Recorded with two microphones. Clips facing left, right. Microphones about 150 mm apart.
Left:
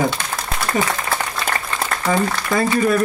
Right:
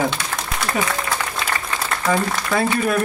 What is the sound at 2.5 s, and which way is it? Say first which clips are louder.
Speech: left 2 dB; 40° left (ahead or behind).